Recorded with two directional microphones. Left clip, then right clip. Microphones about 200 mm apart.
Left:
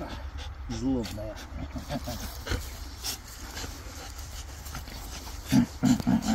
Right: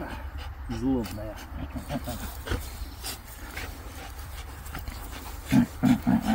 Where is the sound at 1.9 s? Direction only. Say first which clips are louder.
Even; 15° left (ahead or behind).